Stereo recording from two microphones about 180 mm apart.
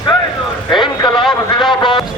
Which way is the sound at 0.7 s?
25° left (ahead or behind).